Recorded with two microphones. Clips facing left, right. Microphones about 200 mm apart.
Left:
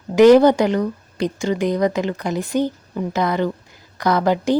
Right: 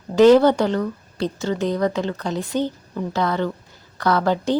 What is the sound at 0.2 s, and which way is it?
A woman's voice, 15° left (ahead or behind).